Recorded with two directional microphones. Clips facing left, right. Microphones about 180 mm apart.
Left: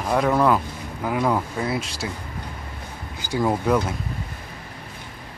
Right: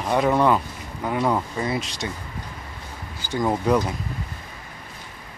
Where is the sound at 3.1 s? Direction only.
10° left (ahead or behind).